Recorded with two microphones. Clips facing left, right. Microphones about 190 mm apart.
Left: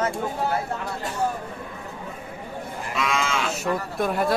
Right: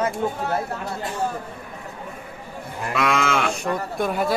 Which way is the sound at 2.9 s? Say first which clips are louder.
Right 5 dB; 60° right (ahead or behind).